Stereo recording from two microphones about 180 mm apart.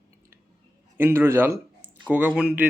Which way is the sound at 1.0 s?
15° right (ahead or behind).